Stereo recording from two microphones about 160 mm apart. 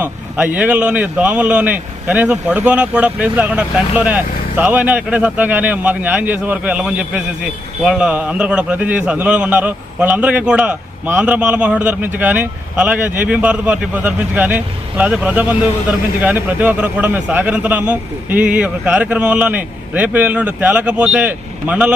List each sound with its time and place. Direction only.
0.0 s a man's voice: 10° right (ahead or behind)